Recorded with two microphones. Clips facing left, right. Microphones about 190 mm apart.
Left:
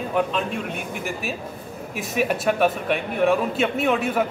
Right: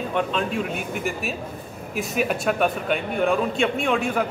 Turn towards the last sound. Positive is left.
turn(degrees=5)  # may be behind; listen again after turning